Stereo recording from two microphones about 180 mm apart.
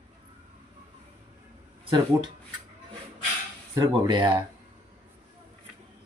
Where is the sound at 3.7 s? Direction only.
25° right (ahead or behind).